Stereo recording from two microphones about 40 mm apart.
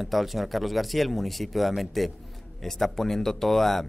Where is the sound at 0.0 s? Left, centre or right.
Centre.